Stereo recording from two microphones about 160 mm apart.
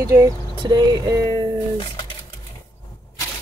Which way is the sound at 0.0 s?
20° right (ahead or behind).